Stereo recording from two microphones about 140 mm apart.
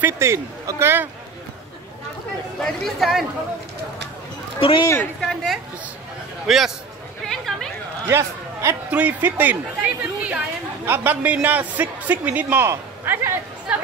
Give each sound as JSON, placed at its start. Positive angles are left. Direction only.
{"t": 0.0, "sound": "speech", "side_deg": -20}
{"t": 2.6, "sound": "speech", "side_deg": 0}
{"t": 4.6, "sound": "speech", "side_deg": 40}
{"t": 5.2, "sound": "a man's voice", "side_deg": 0}
{"t": 7.2, "sound": "chatter", "side_deg": 0}
{"t": 8.1, "sound": "a man's voice", "side_deg": -20}